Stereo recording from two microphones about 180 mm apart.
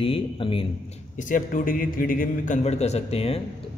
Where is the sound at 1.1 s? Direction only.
45° left (ahead or behind).